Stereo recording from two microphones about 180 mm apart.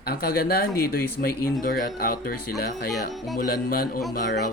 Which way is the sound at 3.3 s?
55° left (ahead or behind).